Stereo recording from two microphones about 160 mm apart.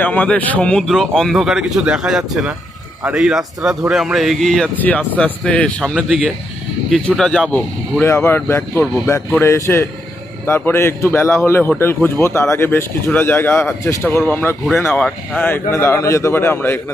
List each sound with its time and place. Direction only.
0.0 s a man's voice: 10° left (ahead or behind)